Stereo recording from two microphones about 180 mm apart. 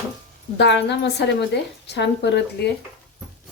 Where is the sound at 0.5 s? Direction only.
75° left (ahead or behind).